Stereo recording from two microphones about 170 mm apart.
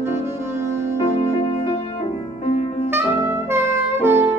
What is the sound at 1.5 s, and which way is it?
Music, 35° left (ahead or behind).